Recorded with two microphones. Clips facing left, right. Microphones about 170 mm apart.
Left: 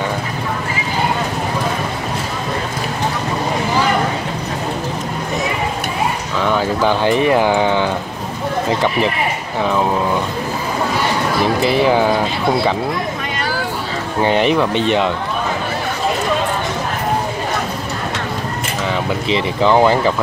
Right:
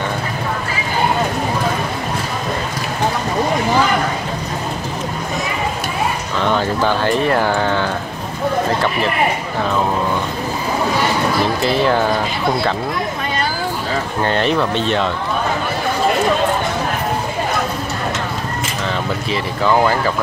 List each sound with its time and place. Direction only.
6.4 s speech: 10° left (ahead or behind)
11.6 s speech: 15° left (ahead or behind)
14.2 s speech: 15° left (ahead or behind)
19.2 s speech: 20° left (ahead or behind)